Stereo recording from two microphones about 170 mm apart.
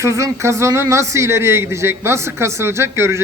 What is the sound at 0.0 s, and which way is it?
Speech, 15° right (ahead or behind).